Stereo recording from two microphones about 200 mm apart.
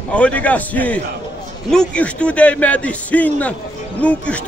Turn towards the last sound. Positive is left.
turn(degrees=5)  # may be behind; listen again after turning